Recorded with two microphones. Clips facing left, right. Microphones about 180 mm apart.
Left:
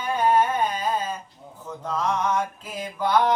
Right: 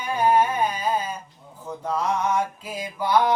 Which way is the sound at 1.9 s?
10° right (ahead or behind).